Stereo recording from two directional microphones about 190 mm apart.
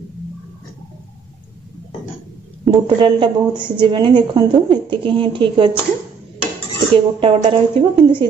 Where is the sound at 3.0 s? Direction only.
25° right (ahead or behind).